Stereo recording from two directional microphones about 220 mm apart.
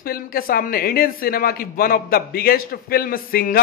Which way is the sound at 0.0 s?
40° left (ahead or behind).